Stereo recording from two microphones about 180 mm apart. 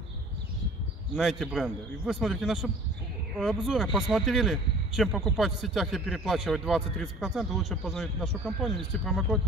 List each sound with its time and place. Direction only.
1.1 s speech: centre (ahead or behind)